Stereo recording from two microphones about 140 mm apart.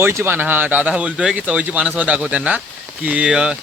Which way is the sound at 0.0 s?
15° right (ahead or behind).